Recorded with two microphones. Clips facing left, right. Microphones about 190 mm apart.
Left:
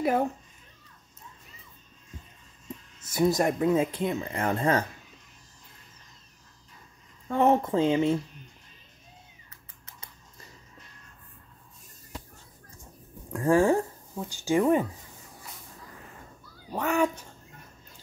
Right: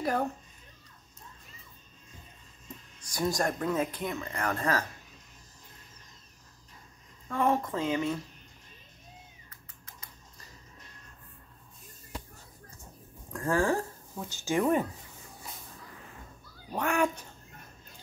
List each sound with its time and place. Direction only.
3.0 s speech: 5° left (ahead or behind)
3.4 s speech: 20° left (ahead or behind)
7.2 s speech: 25° left (ahead or behind)
13.3 s speech: 25° left (ahead or behind)
14.1 s speech: 15° left (ahead or behind)
16.8 s speech: 10° right (ahead or behind)